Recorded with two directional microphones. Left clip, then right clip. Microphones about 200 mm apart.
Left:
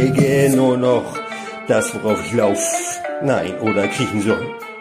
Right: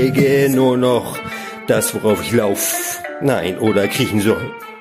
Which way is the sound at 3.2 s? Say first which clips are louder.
Right 3 dB; 40° right (ahead or behind).